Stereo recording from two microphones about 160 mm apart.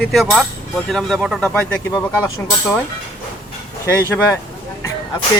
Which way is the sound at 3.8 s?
20° left (ahead or behind).